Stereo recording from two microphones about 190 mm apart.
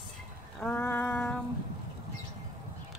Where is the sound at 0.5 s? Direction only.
5° left (ahead or behind).